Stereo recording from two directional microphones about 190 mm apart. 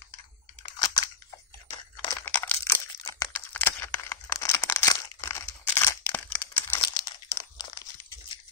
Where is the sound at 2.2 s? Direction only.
5° left (ahead or behind).